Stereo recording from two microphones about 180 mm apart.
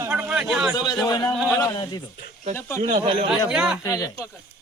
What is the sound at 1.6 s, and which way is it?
Speech, 25° left (ahead or behind).